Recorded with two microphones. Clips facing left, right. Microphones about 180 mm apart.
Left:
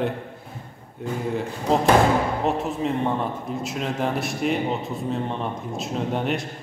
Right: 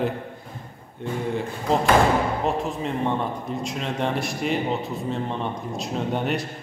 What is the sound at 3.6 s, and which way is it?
Speech, centre (ahead or behind).